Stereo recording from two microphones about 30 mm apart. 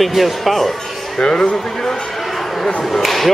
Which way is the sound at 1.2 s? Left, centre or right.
Left.